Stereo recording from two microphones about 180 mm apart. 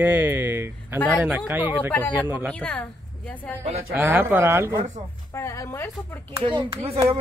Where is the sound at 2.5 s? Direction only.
5° left (ahead or behind).